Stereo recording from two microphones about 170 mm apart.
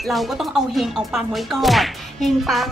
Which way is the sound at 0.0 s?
Centre (ahead or behind).